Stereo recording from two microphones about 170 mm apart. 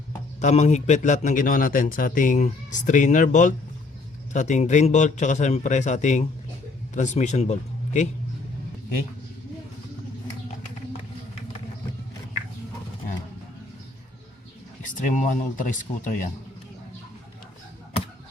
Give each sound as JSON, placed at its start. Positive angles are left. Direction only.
{"t": 0.4, "sound": "a man's voice", "side_deg": 40}
{"t": 14.9, "sound": "a man's voice", "side_deg": 50}